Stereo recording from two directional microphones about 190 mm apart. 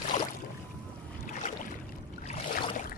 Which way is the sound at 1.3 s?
45° left (ahead or behind).